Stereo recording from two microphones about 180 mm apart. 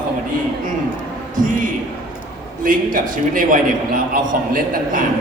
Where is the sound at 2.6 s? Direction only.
50° right (ahead or behind).